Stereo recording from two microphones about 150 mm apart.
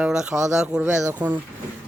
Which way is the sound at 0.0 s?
5° right (ahead or behind).